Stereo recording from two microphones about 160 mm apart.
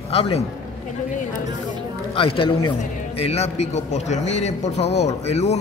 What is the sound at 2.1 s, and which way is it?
A man's voice, 35° left (ahead or behind).